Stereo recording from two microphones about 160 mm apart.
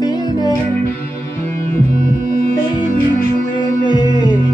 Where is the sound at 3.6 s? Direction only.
30° left (ahead or behind).